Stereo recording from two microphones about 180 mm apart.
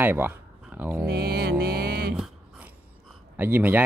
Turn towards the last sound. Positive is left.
turn(degrees=-10)  # may be behind; listen again after turning